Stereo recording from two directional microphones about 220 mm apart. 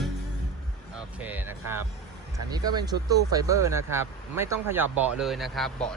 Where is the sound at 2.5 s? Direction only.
20° right (ahead or behind).